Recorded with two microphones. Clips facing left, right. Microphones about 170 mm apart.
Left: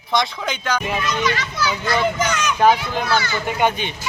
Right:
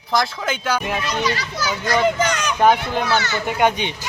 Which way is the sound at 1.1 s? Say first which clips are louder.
Left 1 dB; 35° right (ahead or behind).